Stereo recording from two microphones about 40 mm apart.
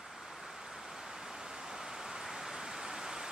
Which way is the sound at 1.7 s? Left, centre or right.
Centre.